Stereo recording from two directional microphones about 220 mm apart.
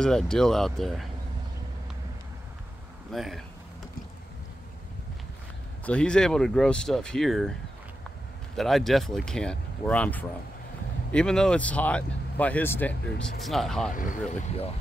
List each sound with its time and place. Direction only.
0.0 s speech: 5° left (ahead or behind)
3.1 s speech: centre (ahead or behind)
5.9 s speech: 5° left (ahead or behind)
8.5 s speech: centre (ahead or behind)
13.9 s speech: 35° left (ahead or behind)